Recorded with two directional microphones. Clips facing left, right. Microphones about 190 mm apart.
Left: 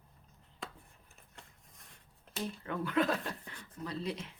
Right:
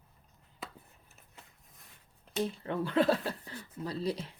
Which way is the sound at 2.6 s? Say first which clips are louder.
Right 3 dB; 30° right (ahead or behind).